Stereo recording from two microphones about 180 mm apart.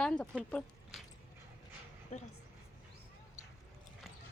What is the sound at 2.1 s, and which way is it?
Speech, 40° left (ahead or behind).